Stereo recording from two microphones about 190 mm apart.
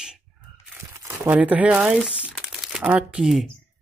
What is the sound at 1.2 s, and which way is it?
Speech, 10° right (ahead or behind).